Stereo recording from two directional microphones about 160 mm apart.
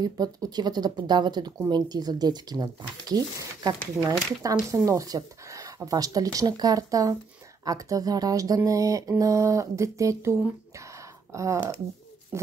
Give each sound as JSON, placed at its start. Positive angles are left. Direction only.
{"t": 0.0, "sound": "speech", "side_deg": -25}